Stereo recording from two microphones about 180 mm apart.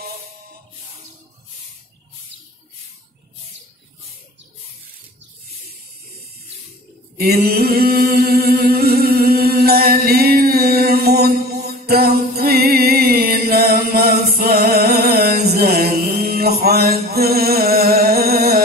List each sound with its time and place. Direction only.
7.2 s chant: 60° right (ahead or behind)
11.6 s music: 60° right (ahead or behind)